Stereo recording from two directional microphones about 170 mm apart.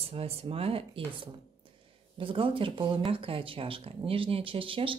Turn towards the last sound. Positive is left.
turn(degrees=-30)  # may be behind; listen again after turning